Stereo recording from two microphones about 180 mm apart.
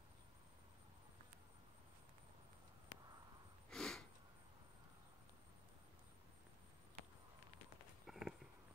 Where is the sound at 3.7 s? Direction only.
5° left (ahead or behind).